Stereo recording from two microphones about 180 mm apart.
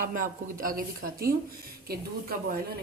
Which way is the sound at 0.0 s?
50° right (ahead or behind).